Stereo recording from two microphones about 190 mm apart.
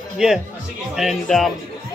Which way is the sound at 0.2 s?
5° right (ahead or behind).